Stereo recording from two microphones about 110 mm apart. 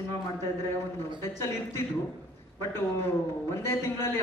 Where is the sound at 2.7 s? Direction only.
25° left (ahead or behind).